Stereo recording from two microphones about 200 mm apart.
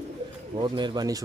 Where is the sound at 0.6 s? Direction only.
20° right (ahead or behind).